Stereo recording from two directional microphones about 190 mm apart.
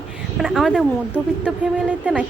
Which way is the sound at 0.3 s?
Centre (ahead or behind).